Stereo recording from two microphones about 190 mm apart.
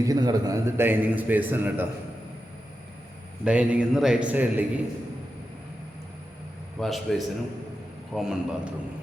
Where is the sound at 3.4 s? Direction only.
5° right (ahead or behind).